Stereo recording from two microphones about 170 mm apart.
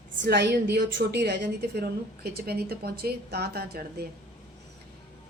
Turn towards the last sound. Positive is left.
turn(degrees=-70)  # may be behind; listen again after turning